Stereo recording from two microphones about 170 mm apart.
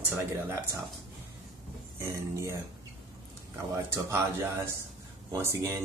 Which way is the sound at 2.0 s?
15° right (ahead or behind).